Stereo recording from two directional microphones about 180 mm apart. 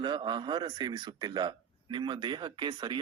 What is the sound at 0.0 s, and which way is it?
Speech, 25° right (ahead or behind).